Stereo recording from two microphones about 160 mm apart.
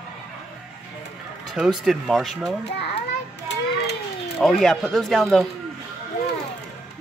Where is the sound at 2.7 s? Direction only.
90° left.